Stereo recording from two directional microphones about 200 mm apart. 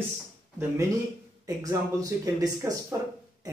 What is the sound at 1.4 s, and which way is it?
Speech, 15° right (ahead or behind).